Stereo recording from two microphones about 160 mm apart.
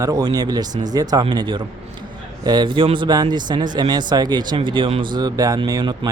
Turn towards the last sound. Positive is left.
turn(degrees=-25)  # may be behind; listen again after turning